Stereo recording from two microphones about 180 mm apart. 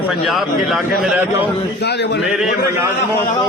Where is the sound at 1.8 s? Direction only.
70° left (ahead or behind).